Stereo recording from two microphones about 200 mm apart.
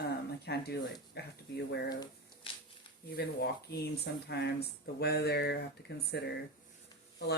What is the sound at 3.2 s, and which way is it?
Speech, 55° left (ahead or behind).